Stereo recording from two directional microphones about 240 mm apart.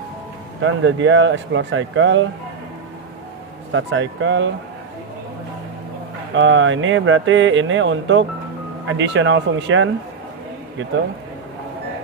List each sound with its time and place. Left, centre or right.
0.6 s speech: right
3.7 s speech: right
6.3 s speech: right